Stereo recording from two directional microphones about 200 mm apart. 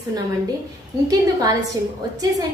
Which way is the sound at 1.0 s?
15° right (ahead or behind).